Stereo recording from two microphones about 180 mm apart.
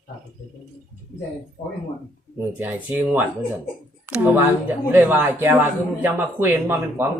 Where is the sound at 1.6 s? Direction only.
40° left (ahead or behind).